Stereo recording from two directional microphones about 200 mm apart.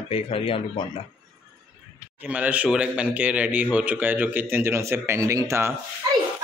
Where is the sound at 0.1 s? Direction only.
25° left (ahead or behind).